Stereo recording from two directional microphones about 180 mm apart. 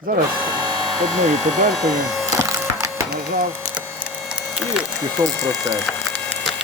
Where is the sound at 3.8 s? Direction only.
10° left (ahead or behind).